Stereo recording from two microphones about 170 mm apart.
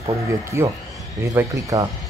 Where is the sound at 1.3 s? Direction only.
20° right (ahead or behind).